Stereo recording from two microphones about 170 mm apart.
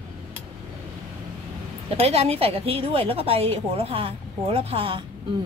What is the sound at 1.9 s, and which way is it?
A woman's voice, 35° right (ahead or behind).